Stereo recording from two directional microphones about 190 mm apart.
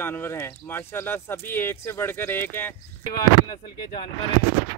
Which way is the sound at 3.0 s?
25° left (ahead or behind).